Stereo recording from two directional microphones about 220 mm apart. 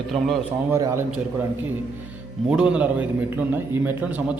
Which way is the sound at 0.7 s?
15° right (ahead or behind).